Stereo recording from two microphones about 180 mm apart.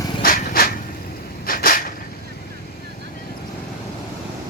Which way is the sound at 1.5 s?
50° left (ahead or behind).